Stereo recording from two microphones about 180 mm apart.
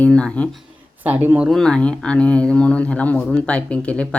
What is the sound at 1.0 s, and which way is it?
Speech, 10° right (ahead or behind).